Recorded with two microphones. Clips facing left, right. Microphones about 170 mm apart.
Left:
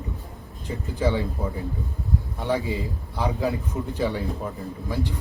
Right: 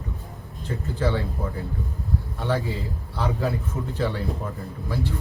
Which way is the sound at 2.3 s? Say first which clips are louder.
Left 1 dB; 15° left (ahead or behind).